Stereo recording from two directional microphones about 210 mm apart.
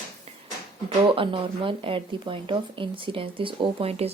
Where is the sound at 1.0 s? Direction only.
25° right (ahead or behind).